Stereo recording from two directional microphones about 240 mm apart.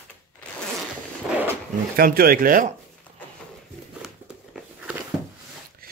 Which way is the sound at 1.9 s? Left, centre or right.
Right.